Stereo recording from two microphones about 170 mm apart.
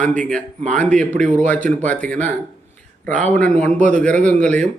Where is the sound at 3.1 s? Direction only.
45° right (ahead or behind).